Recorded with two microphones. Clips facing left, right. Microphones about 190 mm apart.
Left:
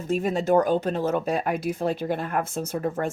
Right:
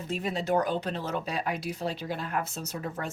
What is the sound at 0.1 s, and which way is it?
Speech, 50° left (ahead or behind).